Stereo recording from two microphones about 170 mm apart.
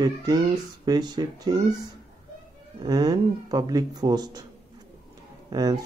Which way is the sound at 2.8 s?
25° right (ahead or behind).